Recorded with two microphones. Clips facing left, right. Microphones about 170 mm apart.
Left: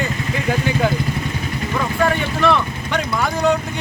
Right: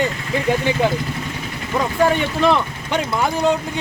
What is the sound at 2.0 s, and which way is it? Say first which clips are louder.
Speech: right 2 dB; 25° right (ahead or behind).